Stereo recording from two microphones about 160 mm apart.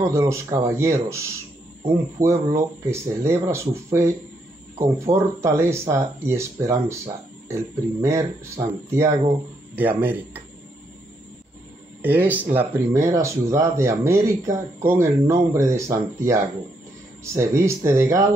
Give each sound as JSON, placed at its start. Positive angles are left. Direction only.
{"t": 0.0, "sound": "speech", "side_deg": -20}
{"t": 12.0, "sound": "speech", "side_deg": -10}